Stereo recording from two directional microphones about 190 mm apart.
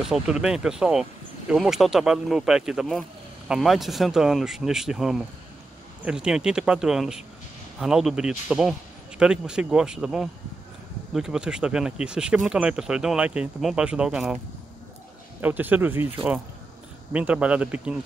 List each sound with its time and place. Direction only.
0.0 s speech: 5° right (ahead or behind)
15.4 s a man's voice: 10° right (ahead or behind)
17.1 s a man's voice: 5° right (ahead or behind)